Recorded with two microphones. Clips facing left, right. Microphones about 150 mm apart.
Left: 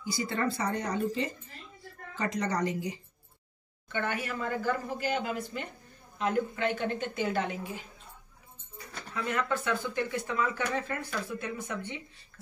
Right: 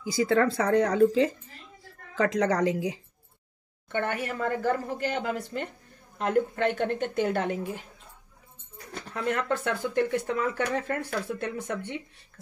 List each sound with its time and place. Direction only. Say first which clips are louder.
0.0 s a woman's voice: right 8 dB; 90° right
3.9 s speech: right 3 dB; 55° right (ahead or behind)
9.1 s speech: right 3 dB; 60° right (ahead or behind)